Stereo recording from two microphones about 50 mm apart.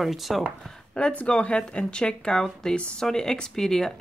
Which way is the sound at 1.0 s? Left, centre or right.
Centre.